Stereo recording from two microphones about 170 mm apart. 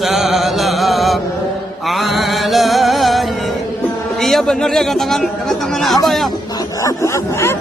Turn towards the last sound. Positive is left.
turn(degrees=15)  # may be behind; listen again after turning